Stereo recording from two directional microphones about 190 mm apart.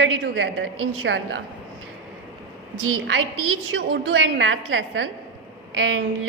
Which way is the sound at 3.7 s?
70° right (ahead or behind).